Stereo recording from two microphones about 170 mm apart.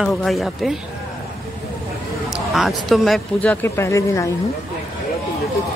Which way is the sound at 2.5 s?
Centre (ahead or behind).